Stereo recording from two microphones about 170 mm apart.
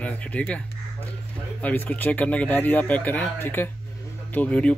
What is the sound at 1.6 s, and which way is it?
Speech, 10° left (ahead or behind).